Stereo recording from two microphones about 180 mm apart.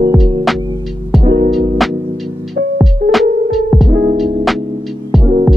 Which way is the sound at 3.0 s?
50° right (ahead or behind).